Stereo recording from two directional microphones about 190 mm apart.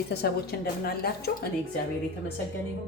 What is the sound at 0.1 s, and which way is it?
A woman's voice, 55° left (ahead or behind).